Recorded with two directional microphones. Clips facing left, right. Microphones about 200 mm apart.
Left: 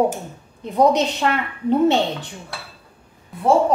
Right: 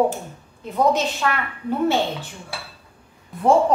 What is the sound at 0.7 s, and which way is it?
Speech, 20° left (ahead or behind).